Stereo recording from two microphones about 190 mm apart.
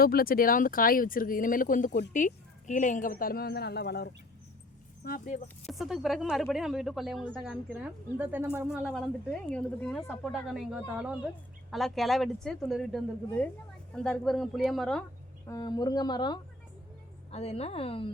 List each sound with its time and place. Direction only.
0.0 s a woman's voice: 50° left (ahead or behind)
5.0 s a woman's voice: 45° left (ahead or behind)
5.6 s a woman's voice: centre (ahead or behind)
15.4 s speech: 20° left (ahead or behind)
17.3 s a woman's voice: 35° left (ahead or behind)